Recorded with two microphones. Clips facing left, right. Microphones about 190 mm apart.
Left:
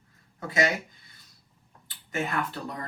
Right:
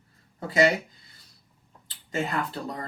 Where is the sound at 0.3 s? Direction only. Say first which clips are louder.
Right 5 dB; 35° right (ahead or behind).